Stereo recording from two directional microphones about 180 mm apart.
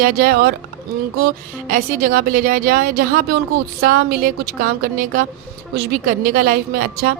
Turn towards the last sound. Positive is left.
turn(degrees=-55)  # may be behind; listen again after turning